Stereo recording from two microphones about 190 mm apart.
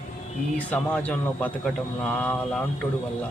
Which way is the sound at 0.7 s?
10° left (ahead or behind).